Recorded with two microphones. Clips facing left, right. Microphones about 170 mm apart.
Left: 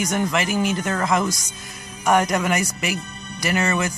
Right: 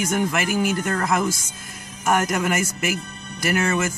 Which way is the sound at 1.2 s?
25° right (ahead or behind).